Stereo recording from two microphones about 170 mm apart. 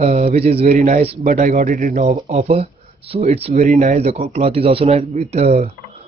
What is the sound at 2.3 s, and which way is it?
A man's voice, 40° right (ahead or behind).